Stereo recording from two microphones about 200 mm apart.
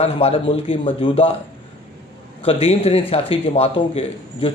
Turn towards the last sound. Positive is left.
turn(degrees=30)  # may be behind; listen again after turning